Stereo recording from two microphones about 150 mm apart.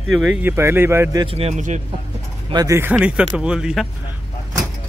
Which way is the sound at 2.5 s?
25° right (ahead or behind).